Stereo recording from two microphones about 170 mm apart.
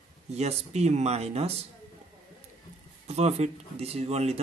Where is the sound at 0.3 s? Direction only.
40° right (ahead or behind).